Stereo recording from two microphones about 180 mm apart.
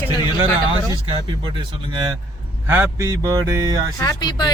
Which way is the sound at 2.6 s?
10° right (ahead or behind).